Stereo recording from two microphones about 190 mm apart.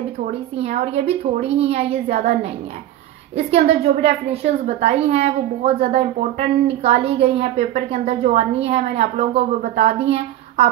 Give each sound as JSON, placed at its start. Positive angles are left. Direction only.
{"t": 0.2, "sound": "a woman's voice", "side_deg": -35}
{"t": 3.3, "sound": "a woman's voice", "side_deg": -30}